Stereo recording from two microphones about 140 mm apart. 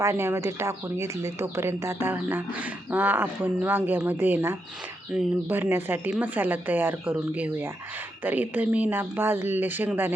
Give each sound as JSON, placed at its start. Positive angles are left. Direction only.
{"t": 0.0, "sound": "speech", "side_deg": -20}